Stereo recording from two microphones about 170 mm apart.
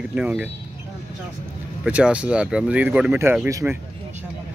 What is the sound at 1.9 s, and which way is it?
Speech, 5° right (ahead or behind).